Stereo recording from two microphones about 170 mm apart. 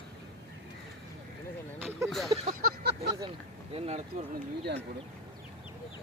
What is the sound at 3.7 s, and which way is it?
Speech, 35° right (ahead or behind).